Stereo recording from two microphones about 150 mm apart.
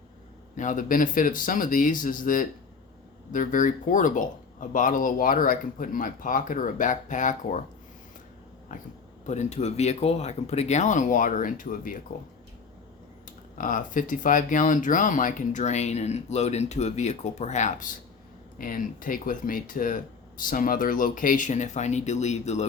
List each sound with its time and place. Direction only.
0.5 s speech: 55° left (ahead or behind)
9.2 s speech: 50° left (ahead or behind)
13.6 s speech: 60° left (ahead or behind)